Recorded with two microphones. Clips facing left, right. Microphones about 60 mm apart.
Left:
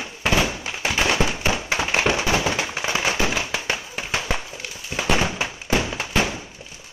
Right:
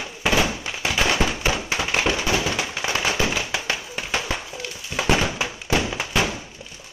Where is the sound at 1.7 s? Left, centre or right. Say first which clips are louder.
Left 4 dB; left.